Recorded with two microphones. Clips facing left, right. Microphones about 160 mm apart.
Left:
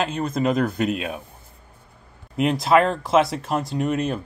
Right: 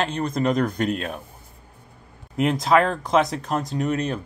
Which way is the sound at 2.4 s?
Centre (ahead or behind).